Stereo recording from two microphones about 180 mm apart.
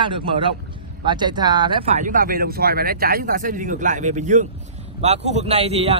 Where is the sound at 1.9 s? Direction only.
45° right (ahead or behind).